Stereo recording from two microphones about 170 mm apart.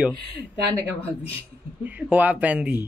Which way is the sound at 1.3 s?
10° right (ahead or behind).